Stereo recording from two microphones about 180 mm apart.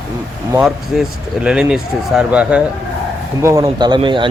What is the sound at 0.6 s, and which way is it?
Speech, 5° right (ahead or behind).